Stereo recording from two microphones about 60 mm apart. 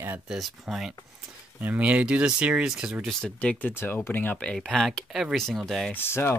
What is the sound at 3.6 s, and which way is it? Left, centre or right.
Speech, left.